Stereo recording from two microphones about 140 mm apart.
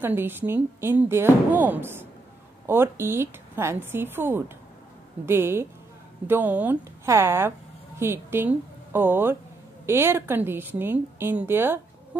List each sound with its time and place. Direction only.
0.0 s speech: 15° right (ahead or behind)